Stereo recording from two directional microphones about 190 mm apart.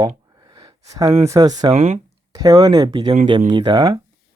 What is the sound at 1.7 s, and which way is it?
Speech, 35° right (ahead or behind).